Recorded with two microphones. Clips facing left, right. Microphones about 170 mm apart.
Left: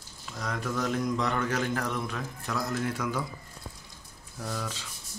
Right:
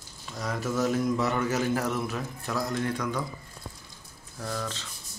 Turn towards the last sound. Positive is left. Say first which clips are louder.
# right 2 dB
turn(degrees=10)  # may be behind; listen again after turning